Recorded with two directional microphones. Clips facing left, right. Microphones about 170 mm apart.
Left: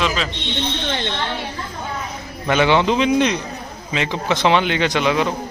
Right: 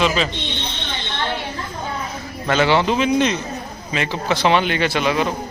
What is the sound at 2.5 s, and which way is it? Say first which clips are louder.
Speech: left 1 dB; 15° left (ahead or behind).